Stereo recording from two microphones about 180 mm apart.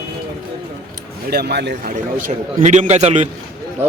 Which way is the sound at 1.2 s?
65° right (ahead or behind).